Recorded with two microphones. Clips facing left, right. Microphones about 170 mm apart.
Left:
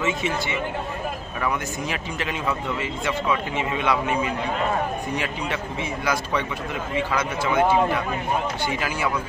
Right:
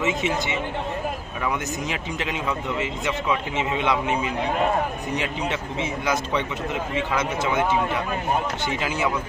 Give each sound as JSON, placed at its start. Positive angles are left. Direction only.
{"t": 0.0, "sound": "speech", "side_deg": -20}
{"t": 8.6, "sound": "speech", "side_deg": -20}